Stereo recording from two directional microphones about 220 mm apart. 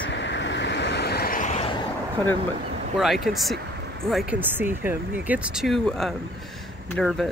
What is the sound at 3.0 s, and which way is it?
Speech, centre (ahead or behind).